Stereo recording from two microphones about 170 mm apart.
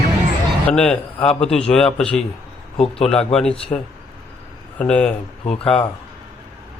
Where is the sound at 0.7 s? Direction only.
5° left (ahead or behind).